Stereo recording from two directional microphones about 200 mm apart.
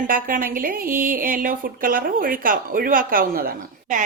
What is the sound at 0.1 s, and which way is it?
A woman's voice, 45° right (ahead or behind).